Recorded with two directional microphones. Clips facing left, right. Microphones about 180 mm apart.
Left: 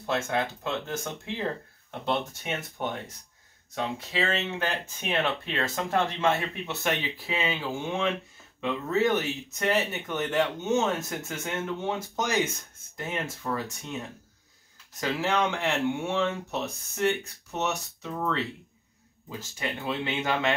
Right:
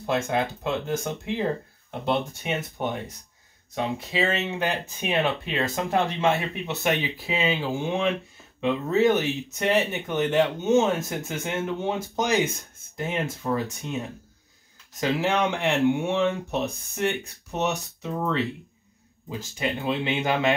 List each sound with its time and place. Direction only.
0.0 s speech: 15° right (ahead or behind)
15.0 s speech: 15° right (ahead or behind)